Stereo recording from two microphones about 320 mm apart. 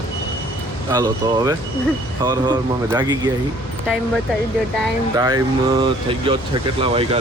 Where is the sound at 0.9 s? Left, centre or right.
Centre.